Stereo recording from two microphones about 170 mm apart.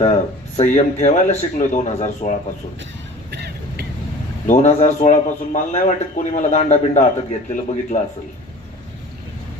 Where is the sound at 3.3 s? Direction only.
75° right (ahead or behind).